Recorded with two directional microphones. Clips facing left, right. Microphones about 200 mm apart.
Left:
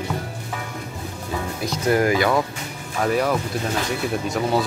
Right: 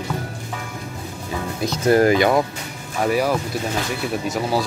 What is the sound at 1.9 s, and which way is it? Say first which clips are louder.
Speech: right 4 dB; 25° right (ahead or behind).